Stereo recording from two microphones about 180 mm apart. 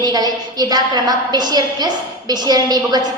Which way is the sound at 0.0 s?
20° right (ahead or behind).